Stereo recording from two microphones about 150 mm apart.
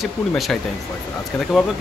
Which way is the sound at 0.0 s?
Centre (ahead or behind).